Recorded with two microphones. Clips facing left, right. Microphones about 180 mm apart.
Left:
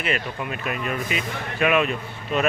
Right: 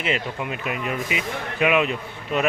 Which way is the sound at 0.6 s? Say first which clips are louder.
Left 1 dB; 15° right (ahead or behind).